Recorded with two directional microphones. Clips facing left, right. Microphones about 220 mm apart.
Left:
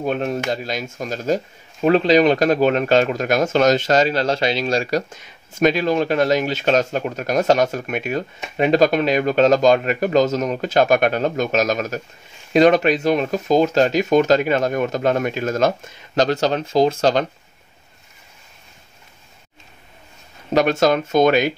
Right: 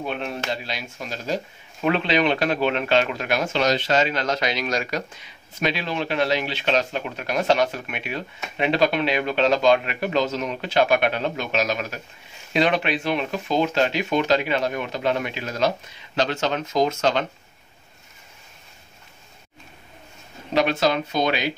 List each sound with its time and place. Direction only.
0.0 s speech: 45° left (ahead or behind)
5.1 s speech: 45° left (ahead or behind)
20.5 s speech: 45° left (ahead or behind)